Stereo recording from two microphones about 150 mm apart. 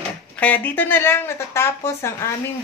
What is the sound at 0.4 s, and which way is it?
Speech, 10° left (ahead or behind).